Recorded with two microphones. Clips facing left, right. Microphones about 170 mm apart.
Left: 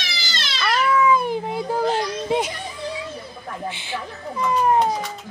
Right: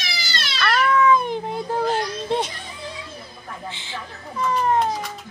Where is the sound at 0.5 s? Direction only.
5° left (ahead or behind).